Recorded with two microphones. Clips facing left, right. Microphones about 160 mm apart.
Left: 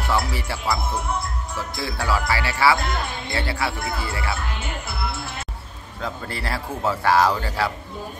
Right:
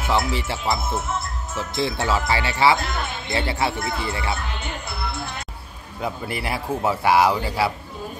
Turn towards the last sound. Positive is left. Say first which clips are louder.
# right 1 dB
turn(degrees=-10)  # may be behind; listen again after turning